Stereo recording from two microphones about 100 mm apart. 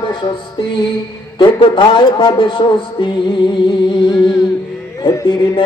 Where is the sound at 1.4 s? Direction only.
55° left (ahead or behind).